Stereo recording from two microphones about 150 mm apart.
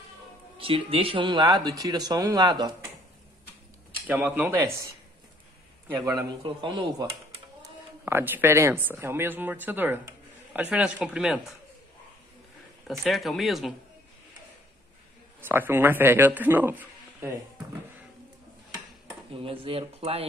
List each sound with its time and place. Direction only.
0.6 s speech: 35° right (ahead or behind)
4.1 s speech: 10° right (ahead or behind)
6.0 s speech: 25° right (ahead or behind)
8.0 s speech: 15° right (ahead or behind)
13.0 s speech: centre (ahead or behind)
15.4 s speech: 15° right (ahead or behind)
19.3 s speech: 35° right (ahead or behind)